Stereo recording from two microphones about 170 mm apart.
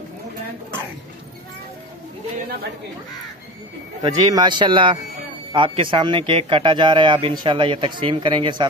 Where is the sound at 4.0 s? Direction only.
25° right (ahead or behind).